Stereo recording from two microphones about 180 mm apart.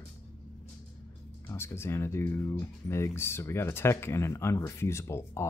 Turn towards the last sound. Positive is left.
turn(degrees=15)  # may be behind; listen again after turning